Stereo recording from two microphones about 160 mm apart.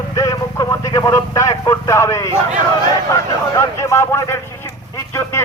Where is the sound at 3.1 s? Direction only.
20° left (ahead or behind).